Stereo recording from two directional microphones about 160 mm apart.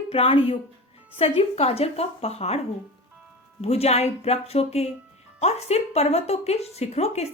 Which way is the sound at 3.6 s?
40° left (ahead or behind).